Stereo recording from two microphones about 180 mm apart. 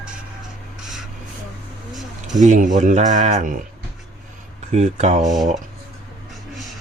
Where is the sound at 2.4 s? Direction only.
45° right (ahead or behind).